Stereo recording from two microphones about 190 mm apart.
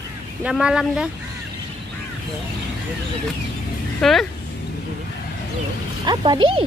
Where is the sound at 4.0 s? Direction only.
Centre (ahead or behind).